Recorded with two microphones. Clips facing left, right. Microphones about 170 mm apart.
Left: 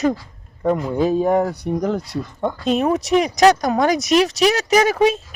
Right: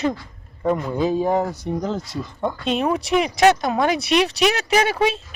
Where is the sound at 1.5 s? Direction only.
60° left (ahead or behind).